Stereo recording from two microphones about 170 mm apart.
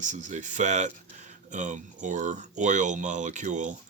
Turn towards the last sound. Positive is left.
turn(degrees=-45)  # may be behind; listen again after turning